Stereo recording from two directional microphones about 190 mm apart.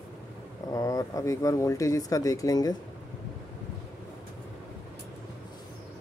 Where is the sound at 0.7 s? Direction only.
20° left (ahead or behind).